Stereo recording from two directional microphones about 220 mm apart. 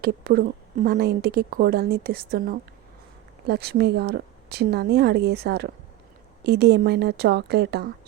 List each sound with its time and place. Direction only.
0.0 s speech: 40° right (ahead or behind)